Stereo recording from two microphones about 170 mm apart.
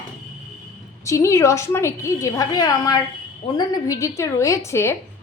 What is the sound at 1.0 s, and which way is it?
A woman's voice, 15° left (ahead or behind).